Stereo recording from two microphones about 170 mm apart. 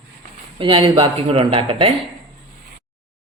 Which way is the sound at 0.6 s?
30° right (ahead or behind).